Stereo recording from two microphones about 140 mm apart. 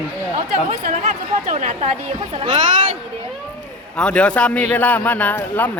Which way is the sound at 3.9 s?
5° left (ahead or behind).